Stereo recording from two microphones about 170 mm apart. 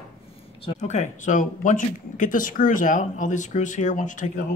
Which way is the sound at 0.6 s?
45° left (ahead or behind).